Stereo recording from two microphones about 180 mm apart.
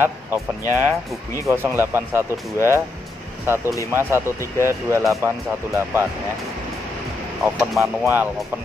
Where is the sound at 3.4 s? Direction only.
15° right (ahead or behind).